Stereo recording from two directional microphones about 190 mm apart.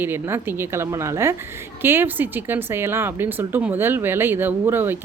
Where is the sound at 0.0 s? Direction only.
10° right (ahead or behind).